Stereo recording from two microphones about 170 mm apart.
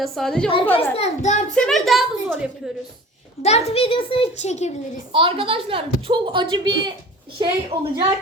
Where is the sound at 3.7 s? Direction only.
35° left (ahead or behind).